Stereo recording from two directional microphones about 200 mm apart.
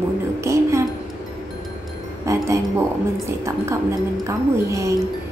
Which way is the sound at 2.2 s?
15° right (ahead or behind).